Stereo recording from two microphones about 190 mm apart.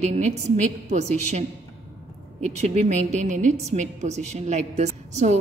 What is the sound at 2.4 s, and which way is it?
A woman's voice, 35° right (ahead or behind).